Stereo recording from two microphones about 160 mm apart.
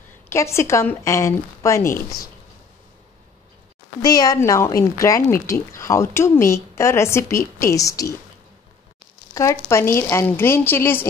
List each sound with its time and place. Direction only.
0.3 s a woman's voice: 15° left (ahead or behind)
4.0 s speech: 25° left (ahead or behind)
9.3 s a woman's voice: 20° left (ahead or behind)